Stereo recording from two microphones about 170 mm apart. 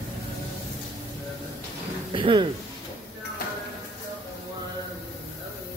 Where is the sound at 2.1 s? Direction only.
30° right (ahead or behind).